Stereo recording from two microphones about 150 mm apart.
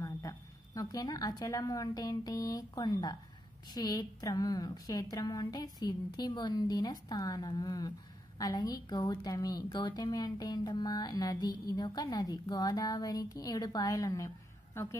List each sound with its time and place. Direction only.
0.0 s a woman's voice: 20° left (ahead or behind)